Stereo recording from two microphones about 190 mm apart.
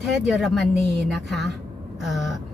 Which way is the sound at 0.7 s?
60° right (ahead or behind).